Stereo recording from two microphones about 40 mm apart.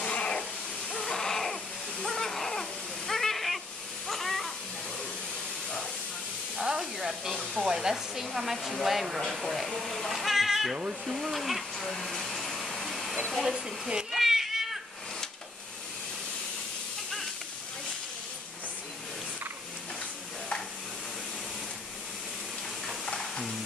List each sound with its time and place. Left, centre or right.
0.0 s hiss: left
1.0 s baby cry: centre
2.0 s a sound: centre
6.8 s hiss: centre
7.5 s hair dryer: centre
11.9 s vacuum cleaner: centre
13.8 s speech: centre
14.2 s cat: centre
23.0 s stir: centre